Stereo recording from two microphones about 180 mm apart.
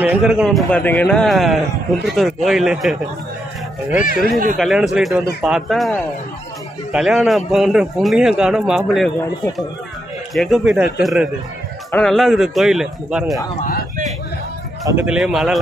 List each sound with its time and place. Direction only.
0.0 s a man's voice: 5° right (ahead or behind)
4.0 s speech: 55° left (ahead or behind)
4.6 s a man's voice: centre (ahead or behind)
13.6 s speech: 50° left (ahead or behind)
14.9 s a man's voice: 10° right (ahead or behind)